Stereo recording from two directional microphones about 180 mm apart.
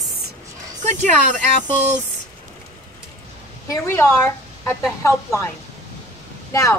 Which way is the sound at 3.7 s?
15° left (ahead or behind).